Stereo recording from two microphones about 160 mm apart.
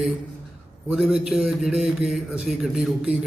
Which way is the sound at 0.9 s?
Centre (ahead or behind).